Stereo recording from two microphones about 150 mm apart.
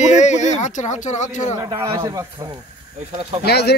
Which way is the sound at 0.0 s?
50° left (ahead or behind).